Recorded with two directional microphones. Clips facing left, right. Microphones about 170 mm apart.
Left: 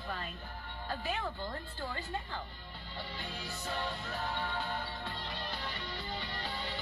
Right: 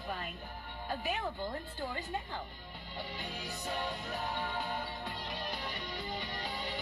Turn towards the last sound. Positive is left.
turn(degrees=-15)  # may be behind; listen again after turning